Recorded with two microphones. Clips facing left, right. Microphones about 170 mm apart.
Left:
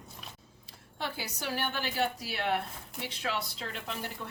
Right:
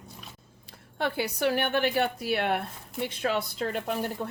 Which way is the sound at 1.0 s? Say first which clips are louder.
Right 10 dB; 60° right (ahead or behind).